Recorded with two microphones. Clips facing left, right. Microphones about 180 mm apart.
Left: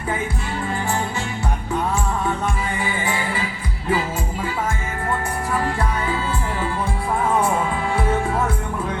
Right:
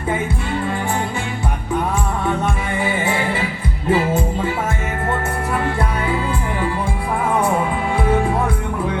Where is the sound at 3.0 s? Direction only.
25° right (ahead or behind).